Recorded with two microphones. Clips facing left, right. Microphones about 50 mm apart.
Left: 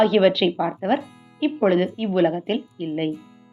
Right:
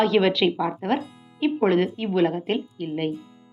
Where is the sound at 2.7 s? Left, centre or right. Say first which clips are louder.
Left 2 dB; centre.